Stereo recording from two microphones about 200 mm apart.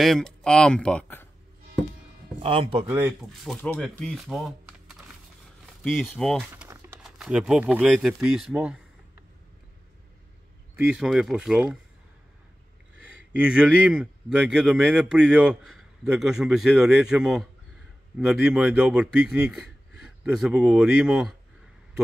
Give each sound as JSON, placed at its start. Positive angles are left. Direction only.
{"t": 0.0, "sound": "speech", "side_deg": 0}
{"t": 2.4, "sound": "a man's voice", "side_deg": -25}
{"t": 2.9, "sound": "speech", "side_deg": -10}
{"t": 3.4, "sound": "speech", "side_deg": 5}
{"t": 6.5, "sound": "typing", "side_deg": -10}
{"t": 7.0, "sound": "speech", "side_deg": 0}
{"t": 10.8, "sound": "speech", "side_deg": -5}
{"t": 13.4, "sound": "speech", "side_deg": -5}